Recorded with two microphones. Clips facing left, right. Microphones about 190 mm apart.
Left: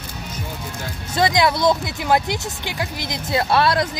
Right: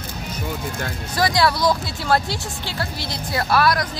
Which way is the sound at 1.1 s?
20° left (ahead or behind).